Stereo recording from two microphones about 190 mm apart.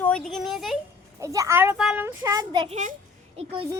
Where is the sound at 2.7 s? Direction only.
40° right (ahead or behind).